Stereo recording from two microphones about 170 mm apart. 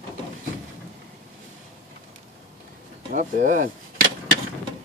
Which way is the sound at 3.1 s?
50° right (ahead or behind).